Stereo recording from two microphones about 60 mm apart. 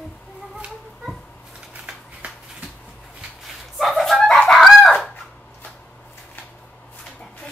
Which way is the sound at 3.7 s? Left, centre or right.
Centre.